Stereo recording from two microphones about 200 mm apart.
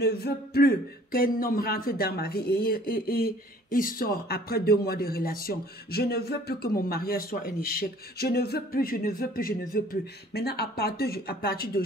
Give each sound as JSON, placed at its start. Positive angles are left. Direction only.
{"t": 0.0, "sound": "speech", "side_deg": 55}